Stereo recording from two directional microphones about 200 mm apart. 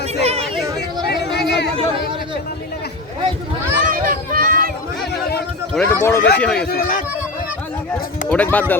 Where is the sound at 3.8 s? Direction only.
45° right (ahead or behind).